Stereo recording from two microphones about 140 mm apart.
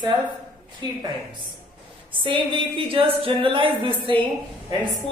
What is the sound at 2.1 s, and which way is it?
Speech, 35° right (ahead or behind).